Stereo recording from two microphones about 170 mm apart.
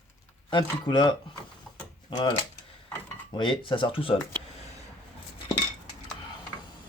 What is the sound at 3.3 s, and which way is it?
Speech, 30° left (ahead or behind).